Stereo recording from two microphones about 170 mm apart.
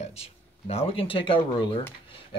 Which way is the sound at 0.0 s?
35° left (ahead or behind).